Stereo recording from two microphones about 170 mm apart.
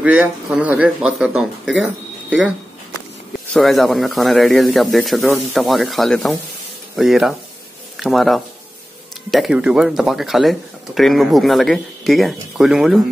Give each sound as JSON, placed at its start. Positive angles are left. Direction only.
{"t": 0.0, "sound": "speech", "side_deg": -5}
{"t": 3.5, "sound": "speech", "side_deg": 0}